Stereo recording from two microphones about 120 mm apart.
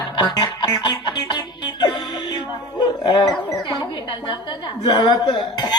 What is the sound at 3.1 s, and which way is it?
Speech, 35° left (ahead or behind).